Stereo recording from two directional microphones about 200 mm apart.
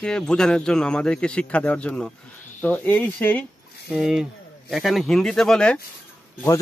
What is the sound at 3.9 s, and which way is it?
Speech, centre (ahead or behind).